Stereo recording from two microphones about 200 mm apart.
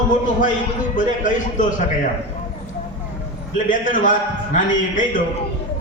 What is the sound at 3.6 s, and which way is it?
A man's voice, 40° left (ahead or behind).